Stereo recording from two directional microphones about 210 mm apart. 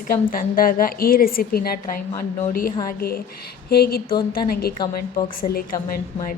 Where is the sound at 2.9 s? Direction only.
45° left (ahead or behind).